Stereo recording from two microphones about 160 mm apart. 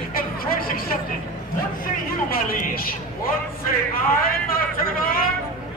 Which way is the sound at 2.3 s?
65° left (ahead or behind).